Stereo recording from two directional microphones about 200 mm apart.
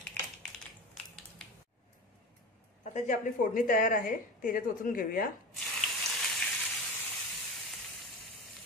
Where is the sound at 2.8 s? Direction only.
35° left (ahead or behind).